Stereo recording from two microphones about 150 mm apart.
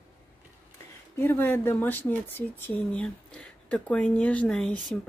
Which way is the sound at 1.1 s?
15° left (ahead or behind).